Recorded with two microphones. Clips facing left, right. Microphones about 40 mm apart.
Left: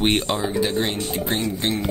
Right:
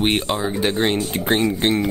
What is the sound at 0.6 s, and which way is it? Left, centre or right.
Speech, right.